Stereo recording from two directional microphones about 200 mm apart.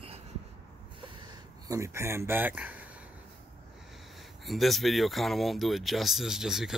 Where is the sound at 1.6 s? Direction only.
15° right (ahead or behind).